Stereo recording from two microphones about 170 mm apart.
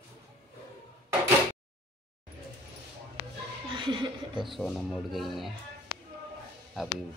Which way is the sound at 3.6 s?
30° right (ahead or behind).